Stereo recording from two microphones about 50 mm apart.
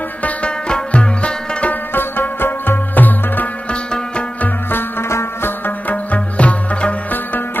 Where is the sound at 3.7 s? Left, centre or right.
Left.